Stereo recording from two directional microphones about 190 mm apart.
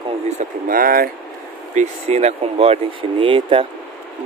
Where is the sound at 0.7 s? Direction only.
50° right (ahead or behind).